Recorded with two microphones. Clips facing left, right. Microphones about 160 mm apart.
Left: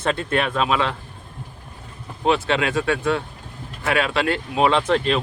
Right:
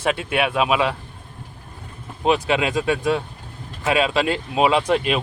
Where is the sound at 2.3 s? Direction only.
15° right (ahead or behind).